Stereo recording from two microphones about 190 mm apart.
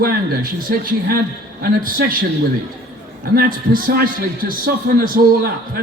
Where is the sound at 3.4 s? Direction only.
50° right (ahead or behind).